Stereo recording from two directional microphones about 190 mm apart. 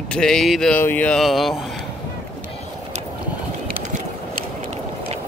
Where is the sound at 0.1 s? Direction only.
5° left (ahead or behind).